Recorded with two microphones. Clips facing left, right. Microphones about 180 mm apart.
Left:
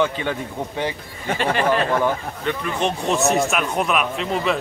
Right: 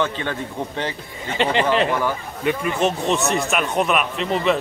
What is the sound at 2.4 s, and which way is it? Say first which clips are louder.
Speech: right 5 dB; 10° right (ahead or behind).